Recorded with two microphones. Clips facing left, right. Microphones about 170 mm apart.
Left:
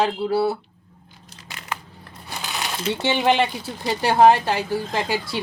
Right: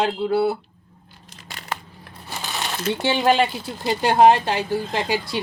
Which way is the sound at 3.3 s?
20° left (ahead or behind).